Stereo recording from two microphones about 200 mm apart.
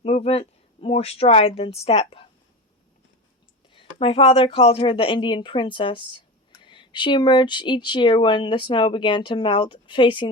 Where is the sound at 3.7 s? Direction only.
30° left (ahead or behind).